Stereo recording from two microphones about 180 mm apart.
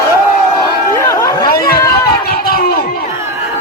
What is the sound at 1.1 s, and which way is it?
Chatter, 20° left (ahead or behind).